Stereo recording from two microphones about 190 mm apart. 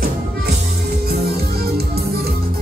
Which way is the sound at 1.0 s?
55° right (ahead or behind).